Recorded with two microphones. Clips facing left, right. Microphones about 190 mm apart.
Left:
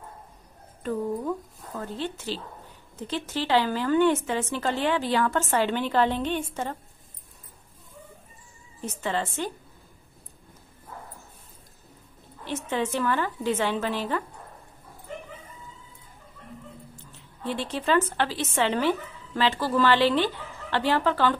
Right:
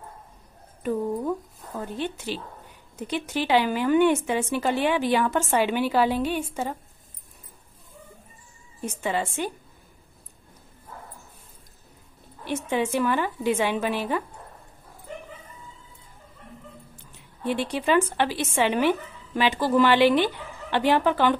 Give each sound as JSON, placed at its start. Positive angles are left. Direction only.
{"t": 1.8, "sound": "a woman's voice", "side_deg": -15}
{"t": 8.8, "sound": "a woman's voice", "side_deg": -10}
{"t": 12.4, "sound": "a woman's voice", "side_deg": -15}
{"t": 16.9, "sound": "a woman's voice", "side_deg": -15}